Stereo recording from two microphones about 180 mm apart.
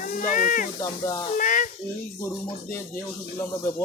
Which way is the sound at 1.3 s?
45° left (ahead or behind).